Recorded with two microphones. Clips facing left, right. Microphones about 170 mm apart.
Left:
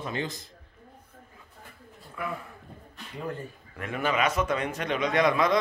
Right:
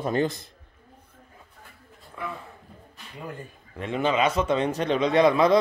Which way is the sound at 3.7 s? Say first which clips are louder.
Right 4 dB; 25° right (ahead or behind).